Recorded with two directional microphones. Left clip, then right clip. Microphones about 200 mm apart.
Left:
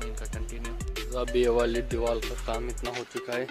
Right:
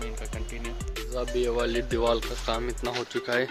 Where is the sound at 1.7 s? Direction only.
15° left (ahead or behind).